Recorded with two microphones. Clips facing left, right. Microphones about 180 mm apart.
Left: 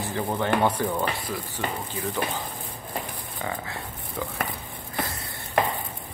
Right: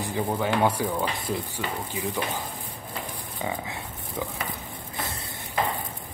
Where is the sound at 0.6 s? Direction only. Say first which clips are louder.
Right 1 dB; 10° right (ahead or behind).